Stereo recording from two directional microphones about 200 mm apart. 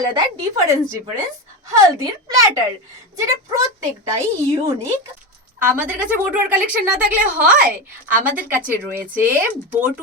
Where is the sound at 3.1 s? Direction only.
15° right (ahead or behind).